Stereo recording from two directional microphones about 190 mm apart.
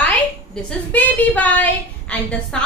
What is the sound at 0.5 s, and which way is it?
A woman's voice, 10° left (ahead or behind).